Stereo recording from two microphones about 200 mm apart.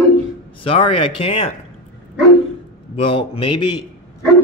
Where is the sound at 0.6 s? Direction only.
25° left (ahead or behind).